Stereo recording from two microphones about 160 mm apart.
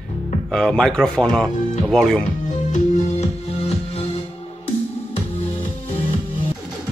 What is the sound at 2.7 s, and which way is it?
Music, 40° left (ahead or behind).